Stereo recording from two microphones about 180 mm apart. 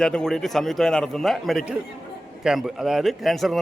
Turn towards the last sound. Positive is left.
turn(degrees=0)  # may be behind; listen again after turning